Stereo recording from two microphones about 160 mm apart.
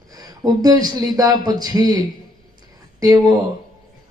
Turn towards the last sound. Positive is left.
turn(degrees=-20)  # may be behind; listen again after turning